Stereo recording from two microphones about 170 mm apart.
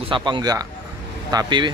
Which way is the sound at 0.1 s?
25° right (ahead or behind).